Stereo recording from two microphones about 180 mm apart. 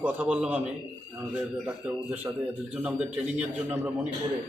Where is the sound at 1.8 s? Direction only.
10° right (ahead or behind).